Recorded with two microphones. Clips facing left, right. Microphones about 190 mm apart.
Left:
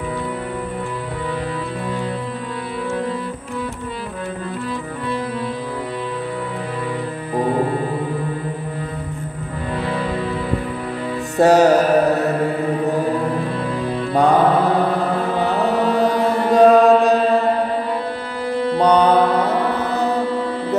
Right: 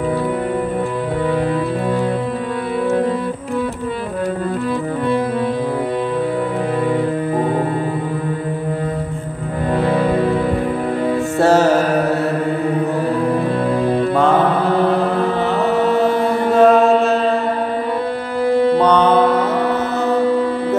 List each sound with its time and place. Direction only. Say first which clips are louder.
9.8 s music: right 7 dB; 50° right (ahead or behind)
11.3 s music: left 2 dB; 15° left (ahead or behind)
14.1 s mantra: left 2 dB; 15° left (ahead or behind)
16.5 s chant: left 1 dB; 15° left (ahead or behind)
18.5 s music: right 6 dB; 55° right (ahead or behind)
18.9 s music: right 1 dB; 10° left (ahead or behind)